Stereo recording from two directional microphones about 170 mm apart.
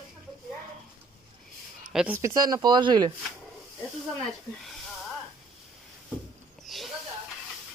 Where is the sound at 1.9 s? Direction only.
5° right (ahead or behind).